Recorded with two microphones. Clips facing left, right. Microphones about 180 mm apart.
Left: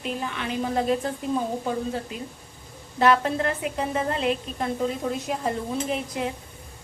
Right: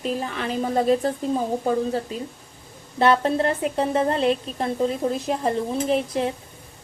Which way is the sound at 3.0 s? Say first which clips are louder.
Right 2 dB; 30° right (ahead or behind).